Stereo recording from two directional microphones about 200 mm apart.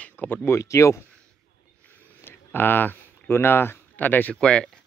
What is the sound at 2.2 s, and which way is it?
Speech, 10° left (ahead or behind).